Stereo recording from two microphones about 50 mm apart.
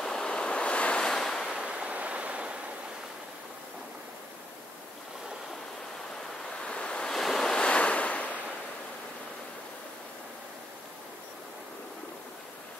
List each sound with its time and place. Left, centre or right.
0.0 s waves: centre
1.0 s waves: centre
1.5 s waves: centre
1.9 s a sound: right
6.6 s waves: left
7.1 s waves: centre; by 8.4 s left